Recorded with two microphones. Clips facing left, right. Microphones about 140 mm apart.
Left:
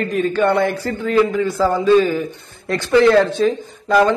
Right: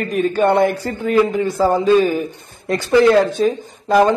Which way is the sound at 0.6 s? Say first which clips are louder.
Right 2 dB; 20° right (ahead or behind).